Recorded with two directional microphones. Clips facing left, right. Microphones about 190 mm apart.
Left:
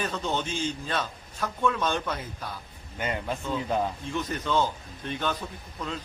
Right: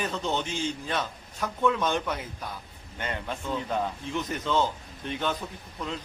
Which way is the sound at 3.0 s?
5° left (ahead or behind).